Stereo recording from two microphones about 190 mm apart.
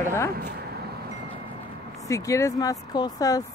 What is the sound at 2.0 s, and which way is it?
Speech, 15° left (ahead or behind).